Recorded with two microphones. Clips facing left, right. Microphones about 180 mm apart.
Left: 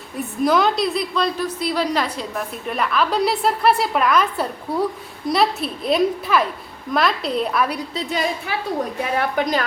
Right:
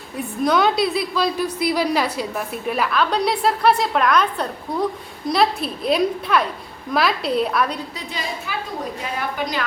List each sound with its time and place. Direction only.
0.2 s a woman's voice: centre (ahead or behind)
9.1 s a woman's voice: 45° left (ahead or behind)